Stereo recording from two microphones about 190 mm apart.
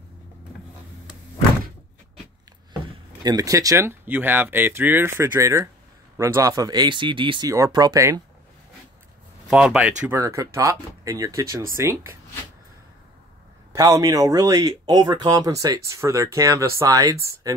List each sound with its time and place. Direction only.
3.2 s speech: 20° right (ahead or behind)
9.5 s speech: 5° right (ahead or behind)
10.0 s speech: 15° right (ahead or behind)
13.7 s speech: 20° right (ahead or behind)